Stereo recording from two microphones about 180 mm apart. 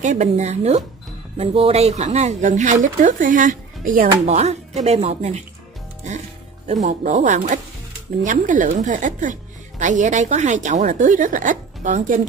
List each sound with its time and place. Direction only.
0.0 s a woman's voice: 40° right (ahead or behind)
6.7 s a woman's voice: 40° right (ahead or behind)